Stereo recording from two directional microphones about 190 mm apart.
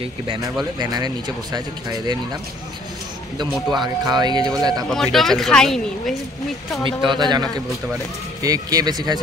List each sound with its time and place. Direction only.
0.7 s speech: 20° right (ahead or behind)
3.3 s speech: 20° right (ahead or behind)
4.8 s speech: centre (ahead or behind)
7.1 s speech: 20° right (ahead or behind)